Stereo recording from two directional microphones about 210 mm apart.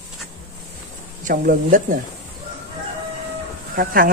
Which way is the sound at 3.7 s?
40° right (ahead or behind).